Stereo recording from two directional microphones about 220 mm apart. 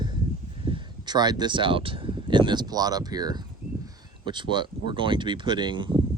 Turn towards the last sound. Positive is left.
turn(degrees=-20)  # may be behind; listen again after turning